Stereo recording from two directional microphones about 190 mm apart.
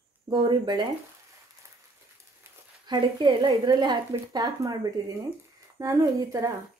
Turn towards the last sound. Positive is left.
turn(degrees=-15)  # may be behind; listen again after turning